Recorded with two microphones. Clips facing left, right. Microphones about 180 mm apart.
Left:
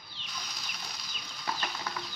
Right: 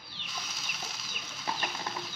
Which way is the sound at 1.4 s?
20° right (ahead or behind).